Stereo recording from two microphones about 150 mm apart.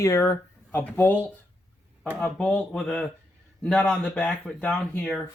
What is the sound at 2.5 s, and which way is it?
Speech, 10° left (ahead or behind).